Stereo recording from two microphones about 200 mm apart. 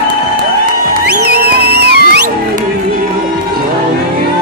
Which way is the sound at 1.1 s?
50° right (ahead or behind).